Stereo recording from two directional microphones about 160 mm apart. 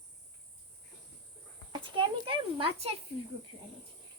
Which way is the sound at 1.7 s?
30° right (ahead or behind).